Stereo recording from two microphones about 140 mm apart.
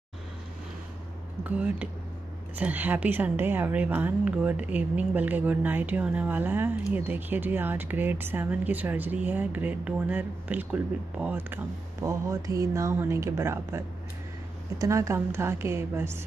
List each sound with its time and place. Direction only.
1.4 s a woman's voice: 10° right (ahead or behind)